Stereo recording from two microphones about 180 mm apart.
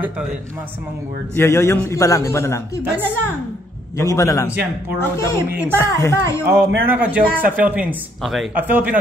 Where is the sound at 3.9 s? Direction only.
15° left (ahead or behind).